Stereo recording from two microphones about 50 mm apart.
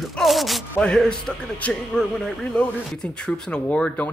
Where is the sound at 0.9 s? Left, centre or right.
Centre.